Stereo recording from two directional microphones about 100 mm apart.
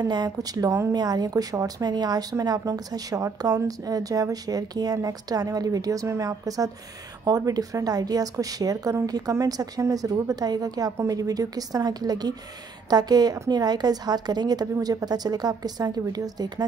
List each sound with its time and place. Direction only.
0.0 s speech: 45° right (ahead or behind)